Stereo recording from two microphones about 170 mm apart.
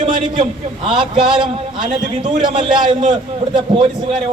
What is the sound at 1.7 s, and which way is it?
A man's voice, 30° right (ahead or behind).